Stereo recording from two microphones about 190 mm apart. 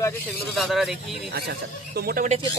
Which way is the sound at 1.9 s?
50° right (ahead or behind).